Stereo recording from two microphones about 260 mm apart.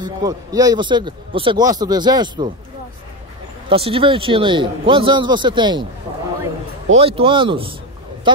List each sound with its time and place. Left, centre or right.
0.0 s speech: centre
3.6 s a man's voice: right
6.9 s a man's voice: right